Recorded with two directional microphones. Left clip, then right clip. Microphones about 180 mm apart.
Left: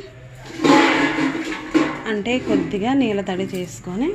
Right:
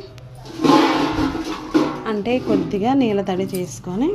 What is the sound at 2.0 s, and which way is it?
A woman's voice, 10° right (ahead or behind).